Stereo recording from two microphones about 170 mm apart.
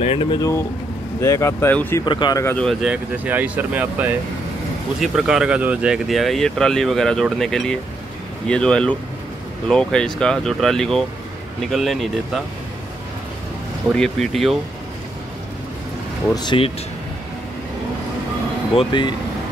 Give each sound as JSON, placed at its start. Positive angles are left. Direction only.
{"t": 0.0, "sound": "speech", "side_deg": 35}
{"t": 2.0, "sound": "speech", "side_deg": 25}
{"t": 2.4, "sound": "speech", "side_deg": 5}
{"t": 13.9, "sound": "speech", "side_deg": 0}
{"t": 16.3, "sound": "speech", "side_deg": 30}
{"t": 18.8, "sound": "speech", "side_deg": 30}